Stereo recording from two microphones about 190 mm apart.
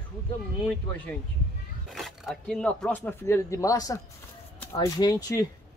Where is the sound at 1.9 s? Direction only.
Centre (ahead or behind).